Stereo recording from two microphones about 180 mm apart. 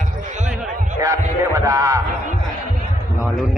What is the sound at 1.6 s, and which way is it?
Speech, 20° right (ahead or behind).